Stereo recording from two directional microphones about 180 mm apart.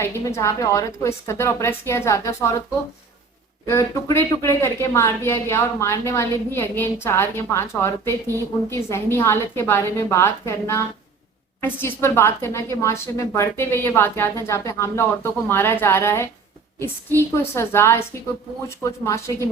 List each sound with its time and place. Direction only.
0.0 s speech: 15° left (ahead or behind)
3.7 s speech: 15° left (ahead or behind)